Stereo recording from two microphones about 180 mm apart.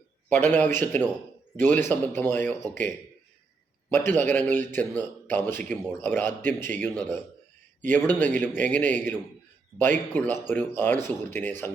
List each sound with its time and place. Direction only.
0.3 s a man's voice: 10° left (ahead or behind)
3.8 s a man's voice: 10° left (ahead or behind)